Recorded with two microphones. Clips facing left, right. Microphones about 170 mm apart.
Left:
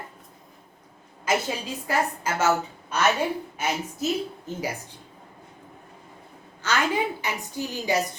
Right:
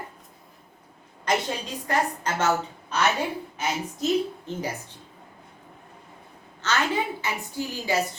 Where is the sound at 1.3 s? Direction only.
5° left (ahead or behind).